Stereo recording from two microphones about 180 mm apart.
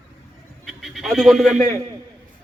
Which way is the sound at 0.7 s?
Centre (ahead or behind).